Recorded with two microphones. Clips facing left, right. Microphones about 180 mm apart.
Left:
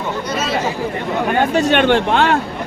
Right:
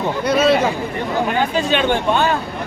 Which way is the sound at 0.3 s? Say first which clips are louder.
Right 12 dB; 60° right (ahead or behind).